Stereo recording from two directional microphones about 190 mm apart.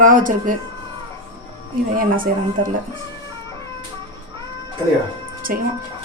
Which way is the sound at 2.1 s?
45° right (ahead or behind).